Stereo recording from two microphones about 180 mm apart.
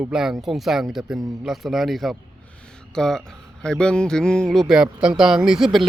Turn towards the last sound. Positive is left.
turn(degrees=0)  # may be behind; listen again after turning